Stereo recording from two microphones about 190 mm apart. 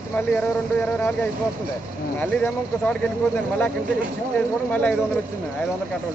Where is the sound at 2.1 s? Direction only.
5° left (ahead or behind).